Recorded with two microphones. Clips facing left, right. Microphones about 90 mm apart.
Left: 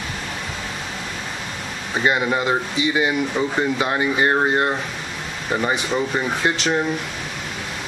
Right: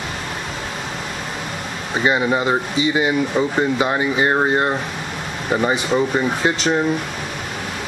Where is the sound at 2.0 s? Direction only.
5° right (ahead or behind).